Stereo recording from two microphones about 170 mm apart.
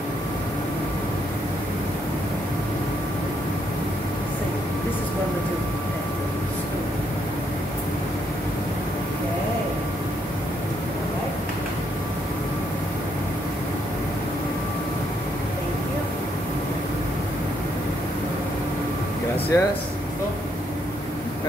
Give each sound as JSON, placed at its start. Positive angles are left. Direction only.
{"t": 19.5, "sound": "speech", "side_deg": 20}